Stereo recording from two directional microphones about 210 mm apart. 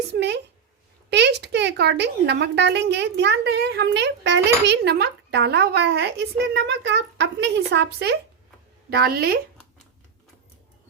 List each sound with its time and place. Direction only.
0.1 s speech: 55° right (ahead or behind)